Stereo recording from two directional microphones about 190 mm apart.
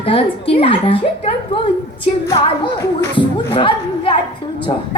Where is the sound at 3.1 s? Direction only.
25° left (ahead or behind).